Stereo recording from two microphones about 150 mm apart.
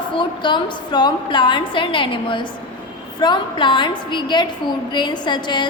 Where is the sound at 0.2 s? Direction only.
30° left (ahead or behind).